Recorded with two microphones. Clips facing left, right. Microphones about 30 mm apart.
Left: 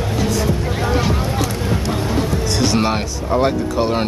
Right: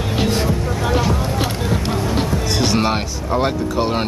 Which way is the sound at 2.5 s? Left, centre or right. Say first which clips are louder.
Even; centre.